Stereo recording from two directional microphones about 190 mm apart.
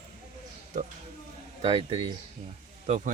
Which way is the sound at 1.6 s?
30° right (ahead or behind).